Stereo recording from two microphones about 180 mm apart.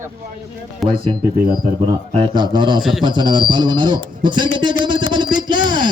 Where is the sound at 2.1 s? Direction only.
30° right (ahead or behind).